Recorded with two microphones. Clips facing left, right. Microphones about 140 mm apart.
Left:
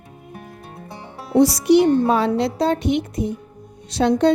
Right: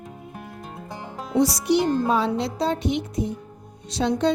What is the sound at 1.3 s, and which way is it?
A woman's voice, 60° left (ahead or behind).